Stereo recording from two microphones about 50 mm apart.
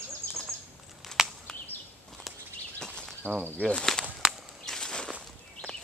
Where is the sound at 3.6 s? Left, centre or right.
Centre.